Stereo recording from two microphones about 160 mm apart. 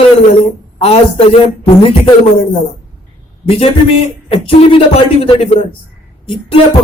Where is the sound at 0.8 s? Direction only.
40° left (ahead or behind).